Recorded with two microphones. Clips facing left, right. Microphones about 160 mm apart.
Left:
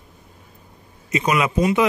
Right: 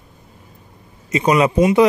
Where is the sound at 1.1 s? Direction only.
30° right (ahead or behind).